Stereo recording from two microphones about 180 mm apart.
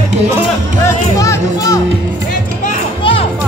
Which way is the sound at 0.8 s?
15° left (ahead or behind).